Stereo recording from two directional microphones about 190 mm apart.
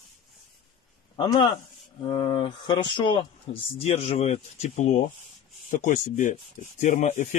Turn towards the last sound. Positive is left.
turn(degrees=40)  # may be behind; listen again after turning